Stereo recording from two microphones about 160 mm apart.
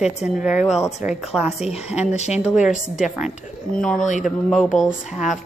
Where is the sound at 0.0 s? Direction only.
5° right (ahead or behind).